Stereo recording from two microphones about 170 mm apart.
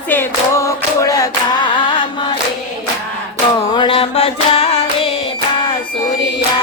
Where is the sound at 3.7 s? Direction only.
30° left (ahead or behind).